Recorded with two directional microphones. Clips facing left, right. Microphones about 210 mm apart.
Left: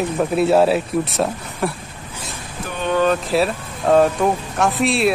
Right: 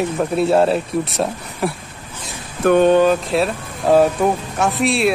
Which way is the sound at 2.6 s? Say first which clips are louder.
Right 19 dB; 60° right (ahead or behind).